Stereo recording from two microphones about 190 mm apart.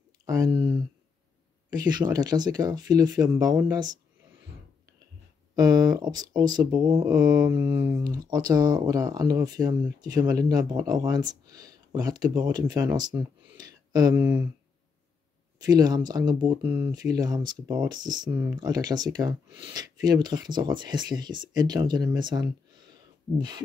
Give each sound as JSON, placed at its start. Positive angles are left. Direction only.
{"t": 0.2, "sound": "speech", "side_deg": -20}
{"t": 1.7, "sound": "speech", "side_deg": -20}
{"t": 5.6, "sound": "speech", "side_deg": -20}
{"t": 13.6, "sound": "a sound", "side_deg": -20}
{"t": 14.2, "sound": "speech", "side_deg": -10}
{"t": 15.6, "sound": "speech", "side_deg": -20}
{"t": 16.6, "sound": "speech", "side_deg": -10}
{"t": 16.9, "sound": "speech", "side_deg": -20}
{"t": 18.3, "sound": "speech", "side_deg": -10}
{"t": 18.6, "sound": "speech", "side_deg": -20}